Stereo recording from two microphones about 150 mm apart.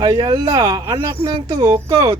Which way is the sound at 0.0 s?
25° right (ahead or behind).